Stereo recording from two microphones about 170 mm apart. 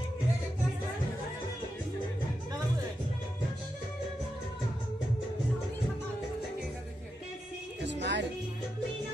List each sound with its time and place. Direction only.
7.8 s music: 90° right